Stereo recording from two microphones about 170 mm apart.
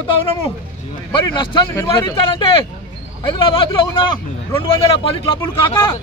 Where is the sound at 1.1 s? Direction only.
25° left (ahead or behind).